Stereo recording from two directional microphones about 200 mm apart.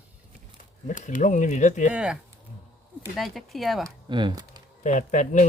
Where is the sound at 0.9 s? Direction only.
40° left (ahead or behind).